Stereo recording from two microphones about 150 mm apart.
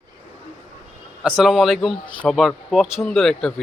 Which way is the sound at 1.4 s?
Centre (ahead or behind).